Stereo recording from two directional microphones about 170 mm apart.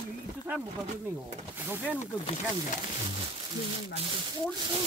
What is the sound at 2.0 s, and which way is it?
Speech, 45° left (ahead or behind).